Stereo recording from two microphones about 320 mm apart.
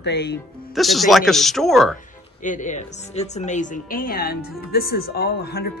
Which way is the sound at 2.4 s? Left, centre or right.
Left.